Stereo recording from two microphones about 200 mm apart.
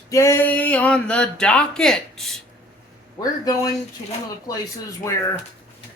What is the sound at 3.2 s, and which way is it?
Speech, 20° left (ahead or behind).